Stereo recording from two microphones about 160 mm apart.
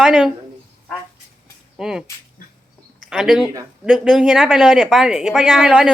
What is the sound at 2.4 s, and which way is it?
Bird, 60° left (ahead or behind).